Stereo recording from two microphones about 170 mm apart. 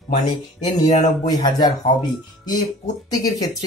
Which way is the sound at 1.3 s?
25° left (ahead or behind).